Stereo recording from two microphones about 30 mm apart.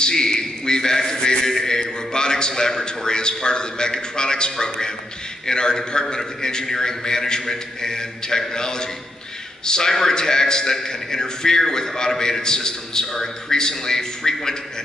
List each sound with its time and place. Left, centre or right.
0.0 s a man's voice: left